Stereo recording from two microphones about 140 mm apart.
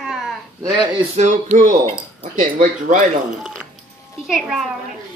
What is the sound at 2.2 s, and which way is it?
Speech, 70° right (ahead or behind).